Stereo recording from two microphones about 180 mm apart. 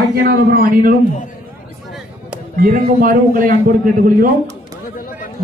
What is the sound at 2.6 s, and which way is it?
Speech, 50° right (ahead or behind).